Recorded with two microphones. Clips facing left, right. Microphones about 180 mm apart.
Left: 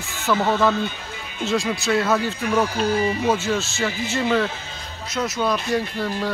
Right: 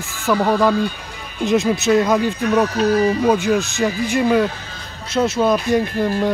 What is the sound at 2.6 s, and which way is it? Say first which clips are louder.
Speech: right 5 dB; 30° left (ahead or behind).